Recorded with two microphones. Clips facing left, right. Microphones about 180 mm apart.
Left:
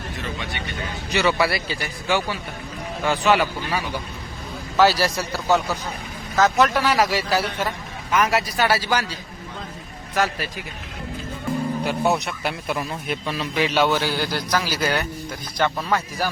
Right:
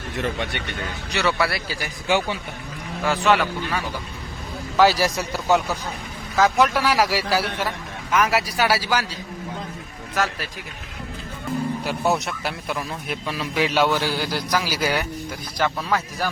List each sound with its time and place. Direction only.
0.2 s speech: 60° right (ahead or behind)
1.1 s a man's voice: centre (ahead or behind)
2.0 s a man's voice: 15° right (ahead or behind)
3.0 s a man's voice: centre (ahead or behind)
4.8 s a man's voice: 15° right (ahead or behind)
10.2 s a man's voice: centre (ahead or behind)
11.9 s a man's voice: centre (ahead or behind)